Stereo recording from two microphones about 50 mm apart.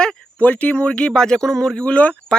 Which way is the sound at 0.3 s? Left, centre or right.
Left.